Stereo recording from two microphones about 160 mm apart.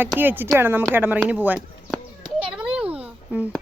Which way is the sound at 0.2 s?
10° right (ahead or behind).